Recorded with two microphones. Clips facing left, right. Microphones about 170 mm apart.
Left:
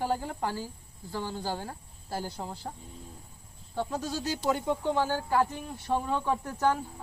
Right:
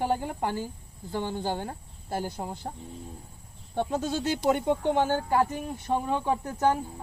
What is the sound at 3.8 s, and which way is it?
Speech, 25° right (ahead or behind).